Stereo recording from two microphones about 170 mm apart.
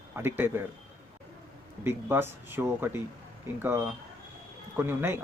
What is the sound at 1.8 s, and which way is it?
Speech, 15° right (ahead or behind).